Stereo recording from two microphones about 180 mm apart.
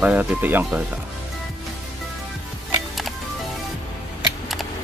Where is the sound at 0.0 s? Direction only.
10° right (ahead or behind).